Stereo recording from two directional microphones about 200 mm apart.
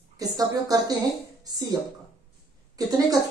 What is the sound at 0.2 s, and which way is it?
A woman's voice, 15° right (ahead or behind).